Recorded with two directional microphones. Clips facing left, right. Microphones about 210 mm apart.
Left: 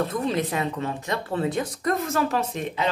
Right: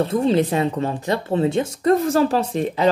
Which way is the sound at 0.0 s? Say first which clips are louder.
Right 7 dB; 30° right (ahead or behind).